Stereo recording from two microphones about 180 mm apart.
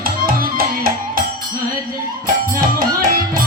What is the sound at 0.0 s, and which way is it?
Music, 55° right (ahead or behind).